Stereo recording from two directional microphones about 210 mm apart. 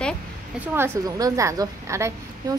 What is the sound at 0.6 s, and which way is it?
A woman's voice, 10° right (ahead or behind).